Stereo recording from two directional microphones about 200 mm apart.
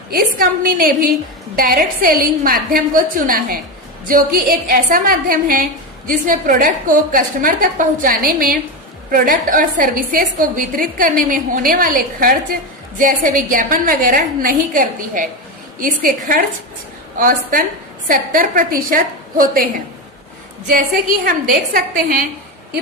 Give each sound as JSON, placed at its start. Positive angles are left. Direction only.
{"t": 0.1, "sound": "a woman's voice", "side_deg": -45}
{"t": 21.2, "sound": "a woman's voice", "side_deg": -45}